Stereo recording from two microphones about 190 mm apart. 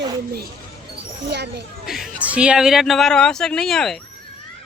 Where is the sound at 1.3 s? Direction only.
65° right (ahead or behind).